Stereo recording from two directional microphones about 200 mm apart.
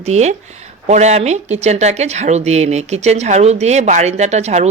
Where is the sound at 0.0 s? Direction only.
35° right (ahead or behind).